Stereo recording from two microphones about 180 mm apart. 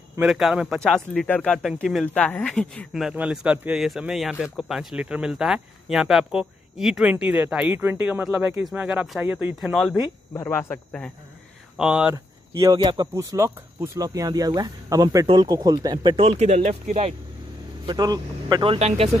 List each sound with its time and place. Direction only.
0.2 s speech: centre (ahead or behind)
10.3 s speech: 15° left (ahead or behind)
11.7 s speech: 5° right (ahead or behind)
12.5 s speech: 20° right (ahead or behind); by 17.1 s 40° right (ahead or behind)
17.8 s speech: 20° right (ahead or behind)